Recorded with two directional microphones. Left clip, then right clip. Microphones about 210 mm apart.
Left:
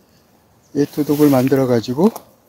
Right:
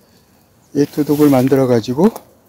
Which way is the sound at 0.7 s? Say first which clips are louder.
Right 2 dB; 15° right (ahead or behind).